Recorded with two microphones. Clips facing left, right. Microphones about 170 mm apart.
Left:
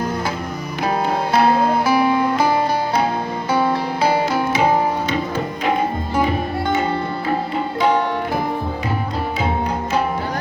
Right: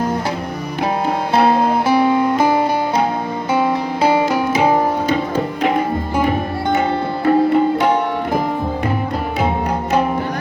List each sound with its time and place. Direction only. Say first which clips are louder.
1.9 s music: right 2 dB; 25° right (ahead or behind)